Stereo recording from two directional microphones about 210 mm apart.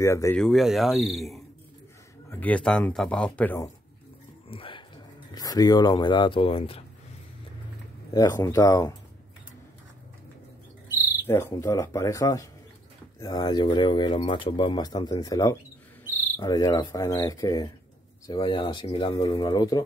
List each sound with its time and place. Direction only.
0.0 s speech: 15° left (ahead or behind)
0.4 s speech: centre (ahead or behind)
4.5 s speech: 25° left (ahead or behind)
8.1 s speech: 15° left (ahead or behind)
11.2 s speech: 10° left (ahead or behind)